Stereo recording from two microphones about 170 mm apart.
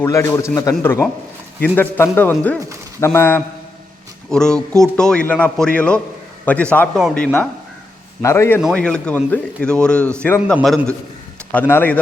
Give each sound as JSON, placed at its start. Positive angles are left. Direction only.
{"t": 0.0, "sound": "a man's voice", "side_deg": 15}
{"t": 8.2, "sound": "a man's voice", "side_deg": 15}